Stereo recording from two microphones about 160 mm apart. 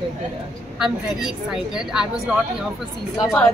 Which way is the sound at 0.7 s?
Centre (ahead or behind).